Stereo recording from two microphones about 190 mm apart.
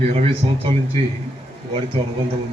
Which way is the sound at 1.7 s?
30° right (ahead or behind).